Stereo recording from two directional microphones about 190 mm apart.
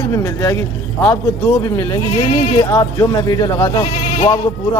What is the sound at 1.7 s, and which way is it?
Speech, 20° left (ahead or behind).